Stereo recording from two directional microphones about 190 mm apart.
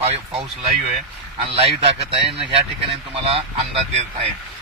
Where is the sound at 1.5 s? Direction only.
30° right (ahead or behind).